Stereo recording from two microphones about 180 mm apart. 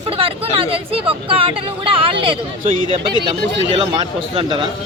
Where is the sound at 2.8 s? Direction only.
25° left (ahead or behind).